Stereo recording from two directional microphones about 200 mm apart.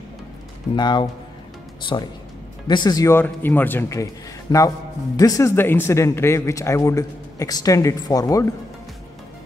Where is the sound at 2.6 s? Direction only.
20° left (ahead or behind).